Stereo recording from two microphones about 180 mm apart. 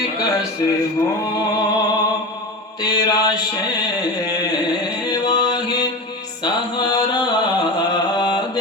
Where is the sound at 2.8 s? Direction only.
20° left (ahead or behind).